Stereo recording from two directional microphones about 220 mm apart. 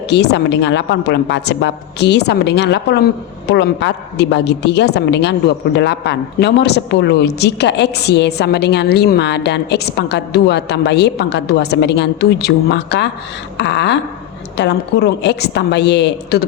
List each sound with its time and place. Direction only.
0.1 s a woman's voice: 50° left (ahead or behind)